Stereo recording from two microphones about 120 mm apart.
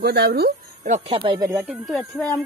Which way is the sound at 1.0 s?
45° right (ahead or behind).